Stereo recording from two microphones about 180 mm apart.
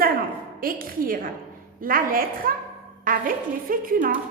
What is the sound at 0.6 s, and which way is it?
A woman's voice, 50° right (ahead or behind).